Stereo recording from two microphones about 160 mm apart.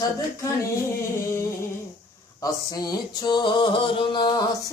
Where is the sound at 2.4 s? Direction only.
25° left (ahead or behind).